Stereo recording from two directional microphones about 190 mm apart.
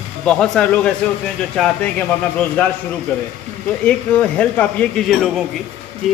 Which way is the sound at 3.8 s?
5° left (ahead or behind).